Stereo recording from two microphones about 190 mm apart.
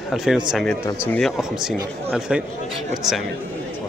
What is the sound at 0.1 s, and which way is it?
A man's voice, centre (ahead or behind).